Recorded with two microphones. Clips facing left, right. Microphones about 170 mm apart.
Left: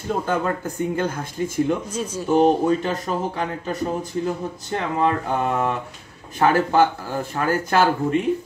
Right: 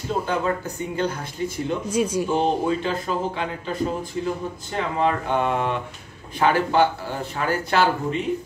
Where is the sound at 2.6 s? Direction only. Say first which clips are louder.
Left 2 dB; 45° left (ahead or behind).